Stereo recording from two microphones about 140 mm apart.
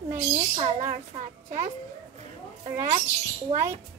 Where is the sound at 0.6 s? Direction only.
45° right (ahead or behind).